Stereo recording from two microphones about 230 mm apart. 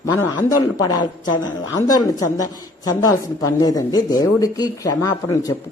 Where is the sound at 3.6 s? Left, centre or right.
Centre.